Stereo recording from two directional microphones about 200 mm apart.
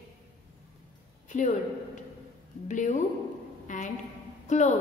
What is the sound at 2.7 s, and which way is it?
A woman's voice, 40° left (ahead or behind).